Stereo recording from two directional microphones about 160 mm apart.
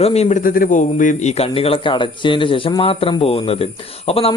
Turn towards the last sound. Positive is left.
turn(degrees=35)  # may be behind; listen again after turning